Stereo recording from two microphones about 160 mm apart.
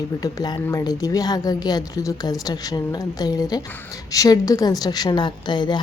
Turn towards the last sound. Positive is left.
turn(degrees=30)  # may be behind; listen again after turning